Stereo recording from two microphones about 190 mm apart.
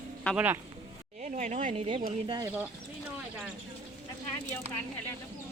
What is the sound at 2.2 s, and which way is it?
Speech, 25° right (ahead or behind).